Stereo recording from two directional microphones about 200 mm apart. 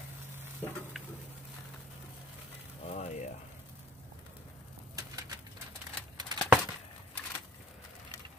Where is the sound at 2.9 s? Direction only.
35° left (ahead or behind).